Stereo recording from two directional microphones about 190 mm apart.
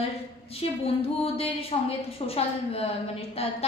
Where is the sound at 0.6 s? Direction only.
30° left (ahead or behind).